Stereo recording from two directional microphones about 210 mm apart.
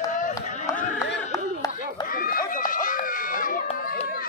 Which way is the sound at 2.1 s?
40° left (ahead or behind).